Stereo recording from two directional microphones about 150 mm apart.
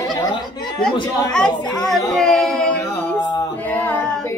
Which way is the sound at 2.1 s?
5° left (ahead or behind).